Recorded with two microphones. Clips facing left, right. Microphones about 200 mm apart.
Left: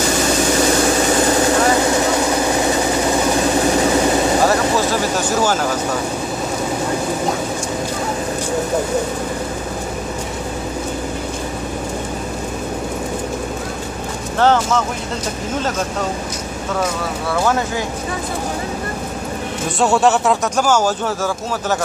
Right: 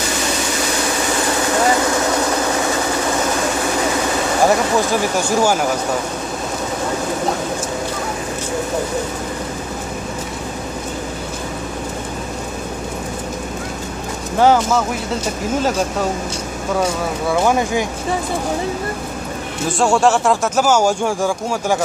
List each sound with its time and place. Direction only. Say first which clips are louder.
5.4 s speech: right 2 dB; 10° right (ahead or behind)
14.4 s speech: right 2 dB; 10° right (ahead or behind)
17.3 s speech: right 2 dB; 15° right (ahead or behind)
19.8 s speech: even; centre (ahead or behind)
20.6 s speech: right 2 dB; 10° right (ahead or behind)